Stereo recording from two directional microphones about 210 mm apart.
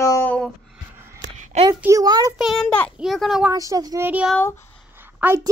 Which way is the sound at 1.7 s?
15° right (ahead or behind).